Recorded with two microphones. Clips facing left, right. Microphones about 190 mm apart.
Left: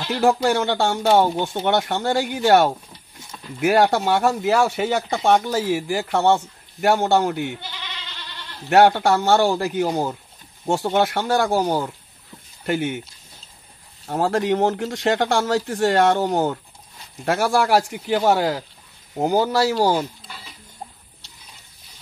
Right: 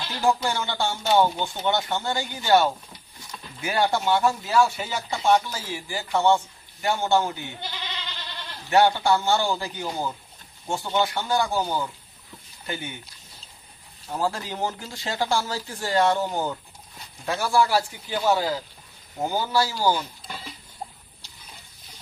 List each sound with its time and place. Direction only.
0.1 s speech: 70° left (ahead or behind)
8.6 s speech: 70° left (ahead or behind)
14.0 s speech: 70° left (ahead or behind)